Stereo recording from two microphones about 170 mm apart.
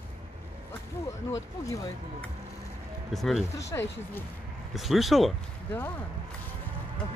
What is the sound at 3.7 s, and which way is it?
Speech, 20° left (ahead or behind).